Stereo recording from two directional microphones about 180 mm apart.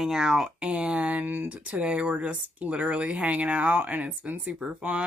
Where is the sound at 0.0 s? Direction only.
5° right (ahead or behind).